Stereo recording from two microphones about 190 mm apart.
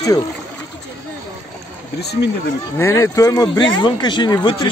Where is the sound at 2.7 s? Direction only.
15° left (ahead or behind).